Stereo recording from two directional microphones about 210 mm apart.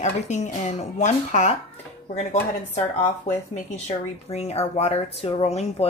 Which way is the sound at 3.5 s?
30° left (ahead or behind).